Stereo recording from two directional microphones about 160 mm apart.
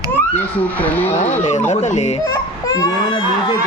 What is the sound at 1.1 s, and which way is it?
Speech, 50° left (ahead or behind).